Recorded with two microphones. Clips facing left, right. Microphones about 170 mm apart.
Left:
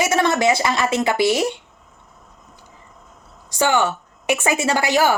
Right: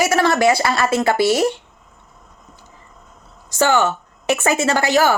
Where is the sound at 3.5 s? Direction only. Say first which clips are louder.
Right 2 dB; 15° left (ahead or behind).